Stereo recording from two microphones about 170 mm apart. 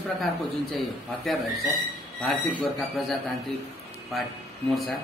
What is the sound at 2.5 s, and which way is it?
Speech, centre (ahead or behind).